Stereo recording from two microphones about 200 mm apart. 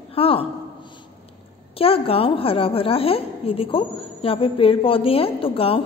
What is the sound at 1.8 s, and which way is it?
A woman's voice, 30° left (ahead or behind).